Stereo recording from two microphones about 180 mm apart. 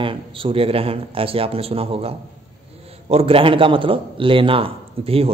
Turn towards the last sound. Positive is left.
turn(degrees=-30)  # may be behind; listen again after turning